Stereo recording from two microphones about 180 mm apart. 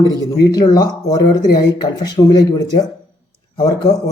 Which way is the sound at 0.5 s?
20° left (ahead or behind).